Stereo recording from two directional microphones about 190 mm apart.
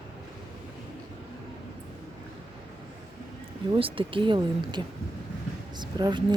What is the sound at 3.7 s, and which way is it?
Speech, 25° right (ahead or behind).